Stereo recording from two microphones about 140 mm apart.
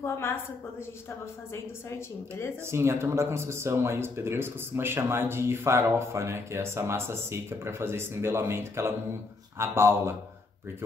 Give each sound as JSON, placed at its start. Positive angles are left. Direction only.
{"t": 1.5, "sound": "a woman's voice", "side_deg": 20}
{"t": 2.6, "sound": "speech", "side_deg": -20}